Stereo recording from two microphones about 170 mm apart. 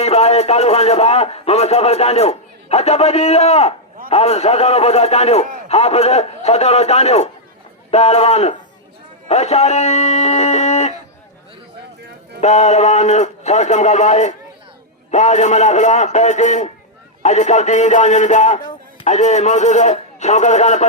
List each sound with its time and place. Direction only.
0.0 s a man's voice: 40° left (ahead or behind)
12.4 s a man's voice: 40° left (ahead or behind)